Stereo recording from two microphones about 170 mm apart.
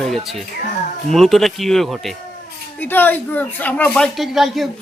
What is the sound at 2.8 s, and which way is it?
Speech, 10° left (ahead or behind).